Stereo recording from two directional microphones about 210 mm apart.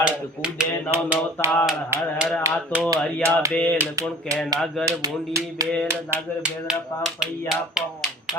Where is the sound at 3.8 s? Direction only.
15° right (ahead or behind).